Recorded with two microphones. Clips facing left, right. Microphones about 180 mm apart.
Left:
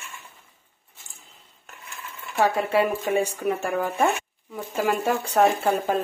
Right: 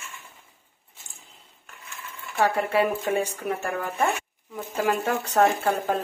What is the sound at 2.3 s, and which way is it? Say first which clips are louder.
Speech: left 1 dB; 10° left (ahead or behind).